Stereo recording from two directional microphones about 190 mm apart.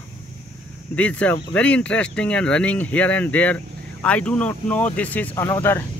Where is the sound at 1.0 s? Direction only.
5° left (ahead or behind).